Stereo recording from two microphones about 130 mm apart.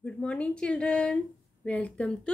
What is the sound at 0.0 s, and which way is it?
A woman's voice, 10° left (ahead or behind).